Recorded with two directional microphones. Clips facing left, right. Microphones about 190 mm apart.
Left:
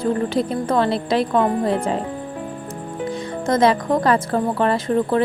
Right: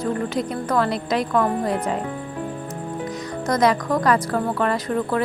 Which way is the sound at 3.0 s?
25° left (ahead or behind).